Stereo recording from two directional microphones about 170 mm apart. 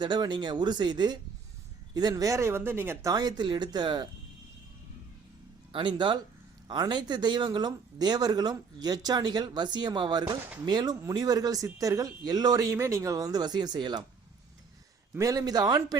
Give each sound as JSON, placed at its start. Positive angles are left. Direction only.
{"t": 0.0, "sound": "speech", "side_deg": -25}
{"t": 5.7, "sound": "speech", "side_deg": -30}
{"t": 15.1, "sound": "speech", "side_deg": -20}